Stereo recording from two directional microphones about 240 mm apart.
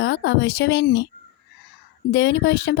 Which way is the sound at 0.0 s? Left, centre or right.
Left.